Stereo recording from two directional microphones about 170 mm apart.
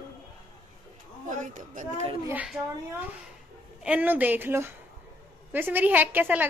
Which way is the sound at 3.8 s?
10° right (ahead or behind).